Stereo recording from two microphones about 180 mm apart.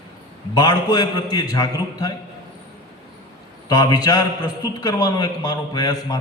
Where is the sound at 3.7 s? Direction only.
20° left (ahead or behind).